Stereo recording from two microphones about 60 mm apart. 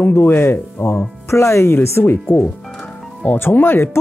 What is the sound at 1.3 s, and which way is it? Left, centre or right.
Speech, left.